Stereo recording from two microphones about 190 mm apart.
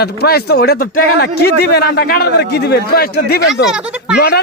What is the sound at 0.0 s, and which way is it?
Speech, 55° left (ahead or behind).